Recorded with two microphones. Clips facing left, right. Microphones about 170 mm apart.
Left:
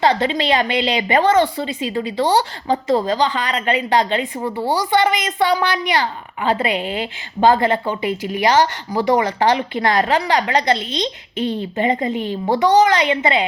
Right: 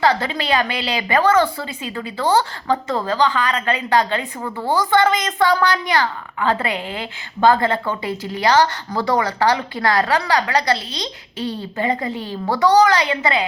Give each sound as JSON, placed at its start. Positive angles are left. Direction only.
{"t": 0.0, "sound": "a woman's voice", "side_deg": 20}
{"t": 2.8, "sound": "a woman's voice", "side_deg": 35}
{"t": 3.1, "sound": "a woman's voice", "side_deg": 20}
{"t": 4.7, "sound": "a woman's voice", "side_deg": 15}